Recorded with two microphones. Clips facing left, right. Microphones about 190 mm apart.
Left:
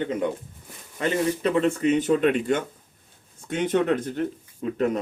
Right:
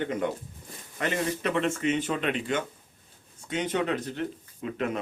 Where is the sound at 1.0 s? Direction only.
30° left (ahead or behind); by 4.2 s 50° left (ahead or behind).